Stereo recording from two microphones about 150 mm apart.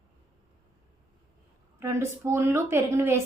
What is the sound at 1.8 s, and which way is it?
A woman's voice, 15° right (ahead or behind).